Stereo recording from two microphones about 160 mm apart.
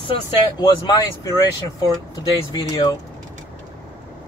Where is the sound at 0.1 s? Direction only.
25° left (ahead or behind).